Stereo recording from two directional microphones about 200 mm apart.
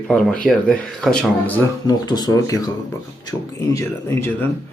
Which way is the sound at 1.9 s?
20° left (ahead or behind).